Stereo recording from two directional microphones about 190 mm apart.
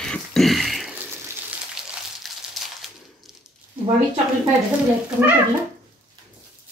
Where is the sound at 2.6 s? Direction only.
Centre (ahead or behind).